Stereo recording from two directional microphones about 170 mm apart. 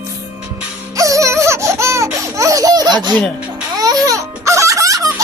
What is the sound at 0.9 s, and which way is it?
Music, 20° right (ahead or behind).